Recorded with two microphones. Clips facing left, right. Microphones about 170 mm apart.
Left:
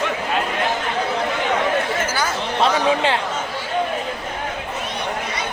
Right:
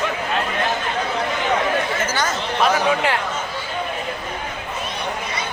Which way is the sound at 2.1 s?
10° left (ahead or behind).